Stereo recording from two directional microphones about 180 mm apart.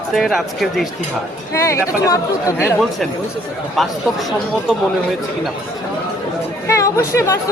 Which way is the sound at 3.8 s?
Centre (ahead or behind).